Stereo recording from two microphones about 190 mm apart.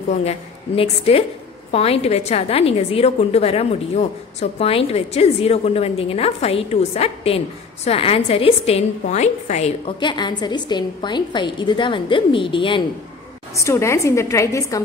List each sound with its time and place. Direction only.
0.1 s a woman's voice: 35° left (ahead or behind)
13.6 s a woman's voice: 15° left (ahead or behind)